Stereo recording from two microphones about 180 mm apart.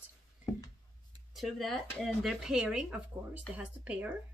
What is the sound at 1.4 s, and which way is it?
A woman's voice, centre (ahead or behind).